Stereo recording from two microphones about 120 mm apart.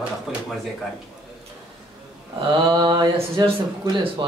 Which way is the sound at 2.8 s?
35° right (ahead or behind).